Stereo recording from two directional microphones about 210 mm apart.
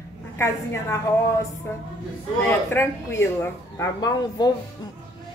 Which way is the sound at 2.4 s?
10° left (ahead or behind).